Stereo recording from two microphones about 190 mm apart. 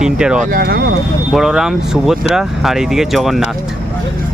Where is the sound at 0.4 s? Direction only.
50° right (ahead or behind).